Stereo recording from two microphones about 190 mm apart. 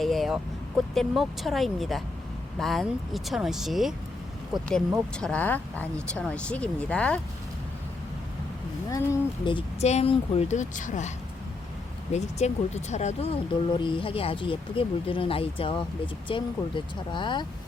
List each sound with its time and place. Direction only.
0.0 s vehicle: centre (ahead or behind)
0.9 s speech: centre (ahead or behind)
8.9 s speech: 20° left (ahead or behind); by 11.1 s 40° left (ahead or behind)
12.1 s speech: 35° left (ahead or behind)